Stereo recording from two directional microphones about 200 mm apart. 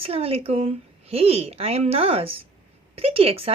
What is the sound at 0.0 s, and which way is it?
Speech, 30° right (ahead or behind).